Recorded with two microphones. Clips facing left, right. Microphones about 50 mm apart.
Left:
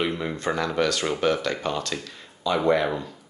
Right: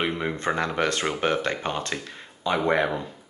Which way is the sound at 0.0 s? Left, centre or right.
Right.